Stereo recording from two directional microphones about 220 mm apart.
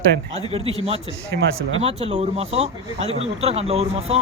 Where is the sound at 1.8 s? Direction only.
25° right (ahead or behind).